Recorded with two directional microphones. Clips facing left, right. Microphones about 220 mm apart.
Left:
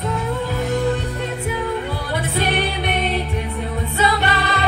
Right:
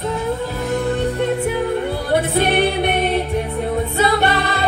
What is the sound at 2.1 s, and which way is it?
Music, 55° right (ahead or behind).